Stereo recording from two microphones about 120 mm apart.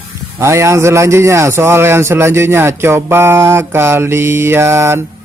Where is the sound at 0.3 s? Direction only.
25° right (ahead or behind).